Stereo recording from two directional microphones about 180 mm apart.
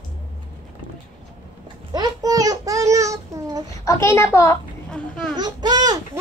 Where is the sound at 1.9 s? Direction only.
20° right (ahead or behind).